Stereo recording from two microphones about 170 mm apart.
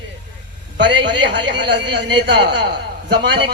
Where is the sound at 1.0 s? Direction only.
90° right.